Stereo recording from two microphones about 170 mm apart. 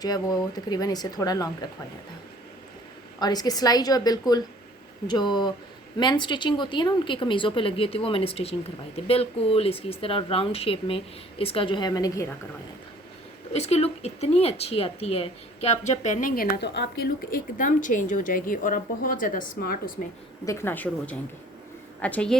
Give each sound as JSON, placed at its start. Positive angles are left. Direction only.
{"t": 0.0, "sound": "speech", "side_deg": 25}
{"t": 3.2, "sound": "speech", "side_deg": 25}
{"t": 13.5, "sound": "speech", "side_deg": 40}
{"t": 20.4, "sound": "speech", "side_deg": 15}